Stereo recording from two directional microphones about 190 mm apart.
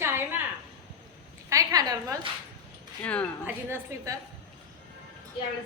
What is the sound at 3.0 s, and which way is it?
Speech, 5° left (ahead or behind).